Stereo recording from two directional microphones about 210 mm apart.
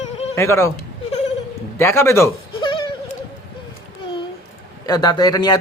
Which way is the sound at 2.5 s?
25° left (ahead or behind).